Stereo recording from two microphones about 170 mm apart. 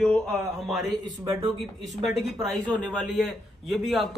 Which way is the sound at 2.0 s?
Centre (ahead or behind).